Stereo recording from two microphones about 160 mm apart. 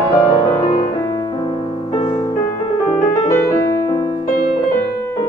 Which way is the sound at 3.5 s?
20° left (ahead or behind).